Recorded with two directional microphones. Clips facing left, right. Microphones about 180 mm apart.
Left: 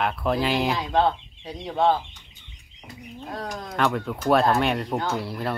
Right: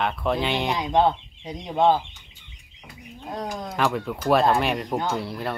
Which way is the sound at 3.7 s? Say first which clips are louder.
Left 1 dB; centre (ahead or behind).